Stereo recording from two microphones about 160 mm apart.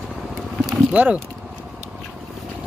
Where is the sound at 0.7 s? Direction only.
10° right (ahead or behind).